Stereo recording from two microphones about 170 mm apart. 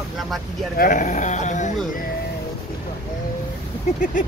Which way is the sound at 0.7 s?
55° left (ahead or behind).